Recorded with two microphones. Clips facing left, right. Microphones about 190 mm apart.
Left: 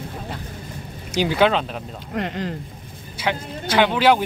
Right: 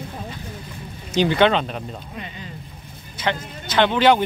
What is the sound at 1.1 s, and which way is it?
Speech, 5° left (ahead or behind).